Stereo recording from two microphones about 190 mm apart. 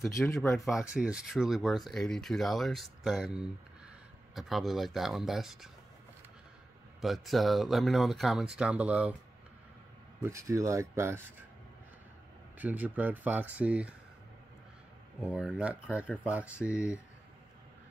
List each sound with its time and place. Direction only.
0.2 s speech: centre (ahead or behind)
7.0 s speech: centre (ahead or behind)
10.2 s speech: 15° right (ahead or behind)
12.5 s speech: 10° right (ahead or behind)
15.2 s speech: 5° right (ahead or behind)